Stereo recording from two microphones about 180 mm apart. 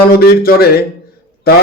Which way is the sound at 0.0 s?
55° left (ahead or behind).